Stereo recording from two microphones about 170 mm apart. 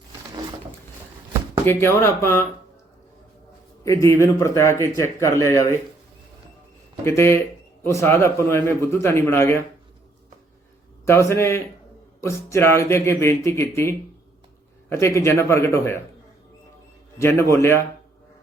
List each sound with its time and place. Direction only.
1.6 s speech: 15° left (ahead or behind)
3.8 s speech: 15° left (ahead or behind)
7.0 s speech: 15° left (ahead or behind)
11.0 s speech: 15° left (ahead or behind)
17.2 s speech: 15° left (ahead or behind)